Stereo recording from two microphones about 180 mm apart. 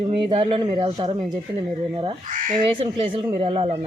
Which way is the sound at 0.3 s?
25° right (ahead or behind).